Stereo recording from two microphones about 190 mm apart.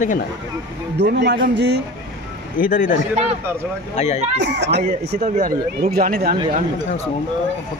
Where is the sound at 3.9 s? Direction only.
35° left (ahead or behind).